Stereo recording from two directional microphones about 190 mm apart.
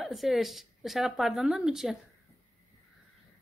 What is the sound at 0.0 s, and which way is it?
Speech, centre (ahead or behind).